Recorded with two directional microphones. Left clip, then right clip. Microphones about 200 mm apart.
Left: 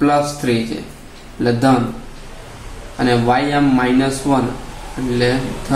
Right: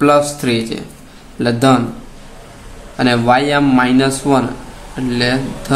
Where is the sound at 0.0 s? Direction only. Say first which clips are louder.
Right 4 dB; 40° right (ahead or behind).